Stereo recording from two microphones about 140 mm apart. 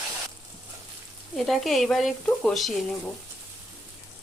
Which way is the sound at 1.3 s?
Centre (ahead or behind).